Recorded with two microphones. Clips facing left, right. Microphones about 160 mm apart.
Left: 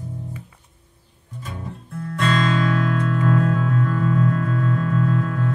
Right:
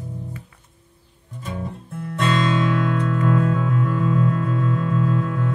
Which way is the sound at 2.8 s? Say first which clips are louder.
Even; 20° right (ahead or behind).